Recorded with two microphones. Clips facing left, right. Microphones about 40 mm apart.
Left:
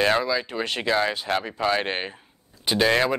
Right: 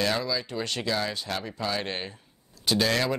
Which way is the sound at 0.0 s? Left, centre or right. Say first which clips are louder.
Left 6 dB; left.